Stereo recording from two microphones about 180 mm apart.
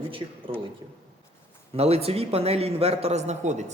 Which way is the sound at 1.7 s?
35° right (ahead or behind).